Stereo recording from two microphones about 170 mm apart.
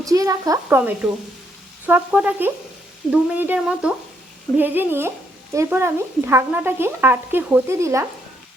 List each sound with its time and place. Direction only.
0.0 s speech: 20° right (ahead or behind)